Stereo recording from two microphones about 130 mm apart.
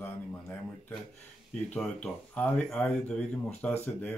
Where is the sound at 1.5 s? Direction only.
10° left (ahead or behind).